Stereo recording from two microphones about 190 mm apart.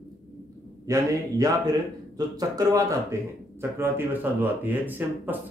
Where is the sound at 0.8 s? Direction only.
20° right (ahead or behind).